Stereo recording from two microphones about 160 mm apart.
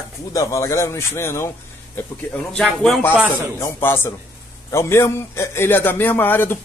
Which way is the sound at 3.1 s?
10° right (ahead or behind).